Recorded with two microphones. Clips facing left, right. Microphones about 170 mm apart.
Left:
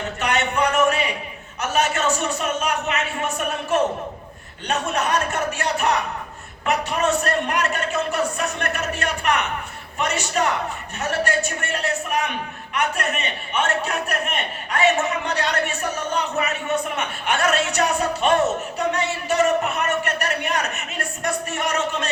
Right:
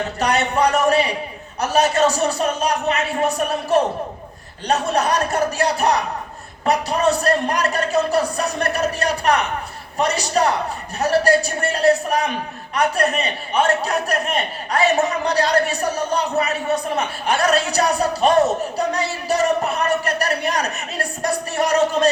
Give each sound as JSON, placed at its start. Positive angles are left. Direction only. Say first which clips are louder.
{"t": 0.2, "sound": "a man's voice", "louder": "right 3 dB", "side_deg": -35}